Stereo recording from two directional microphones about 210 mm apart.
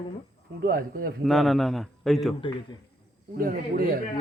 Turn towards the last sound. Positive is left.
turn(degrees=-45)  # may be behind; listen again after turning